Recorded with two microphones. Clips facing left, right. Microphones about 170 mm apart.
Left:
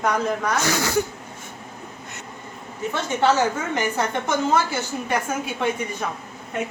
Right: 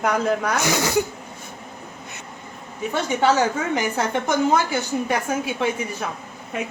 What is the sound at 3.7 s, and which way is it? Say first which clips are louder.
Speech: right 1 dB; 10° right (ahead or behind).